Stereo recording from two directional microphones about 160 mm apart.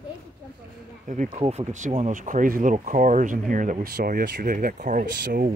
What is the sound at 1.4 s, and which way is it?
Speech, 40° right (ahead or behind).